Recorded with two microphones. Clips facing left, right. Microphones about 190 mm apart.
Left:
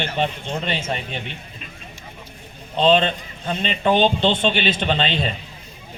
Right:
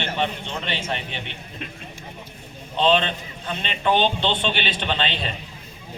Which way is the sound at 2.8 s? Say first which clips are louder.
Left 3 dB; 45° left (ahead or behind).